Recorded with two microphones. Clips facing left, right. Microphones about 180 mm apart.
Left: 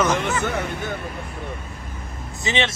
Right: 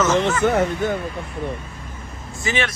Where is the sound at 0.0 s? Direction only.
15° left (ahead or behind).